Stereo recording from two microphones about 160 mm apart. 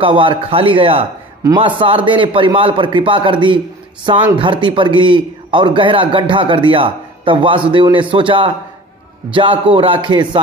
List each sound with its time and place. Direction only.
0.0 s a man's voice: 30° right (ahead or behind)